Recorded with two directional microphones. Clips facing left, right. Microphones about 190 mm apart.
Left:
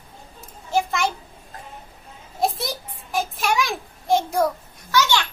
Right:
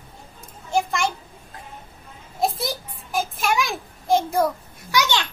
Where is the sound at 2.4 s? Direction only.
Centre (ahead or behind).